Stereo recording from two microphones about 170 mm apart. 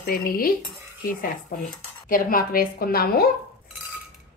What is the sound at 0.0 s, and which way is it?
Speech, 55° left (ahead or behind).